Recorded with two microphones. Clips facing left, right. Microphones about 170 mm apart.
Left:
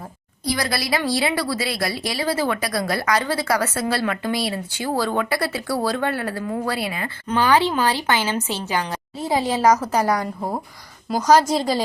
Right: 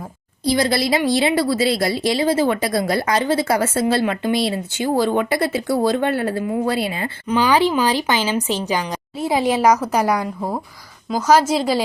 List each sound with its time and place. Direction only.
0.4 s a woman's voice: 25° right (ahead or behind)
7.3 s a woman's voice: 10° right (ahead or behind)